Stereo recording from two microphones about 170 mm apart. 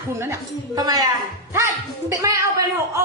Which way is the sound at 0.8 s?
20° right (ahead or behind).